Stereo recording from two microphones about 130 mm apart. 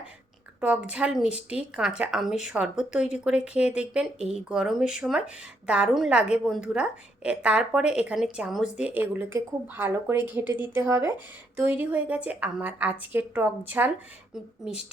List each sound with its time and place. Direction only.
0.6 s speech: 10° right (ahead or behind)